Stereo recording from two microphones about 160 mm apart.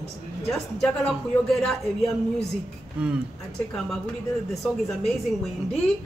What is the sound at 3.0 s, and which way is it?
Speech, 10° right (ahead or behind).